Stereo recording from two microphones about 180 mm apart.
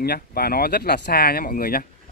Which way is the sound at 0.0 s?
60° left (ahead or behind).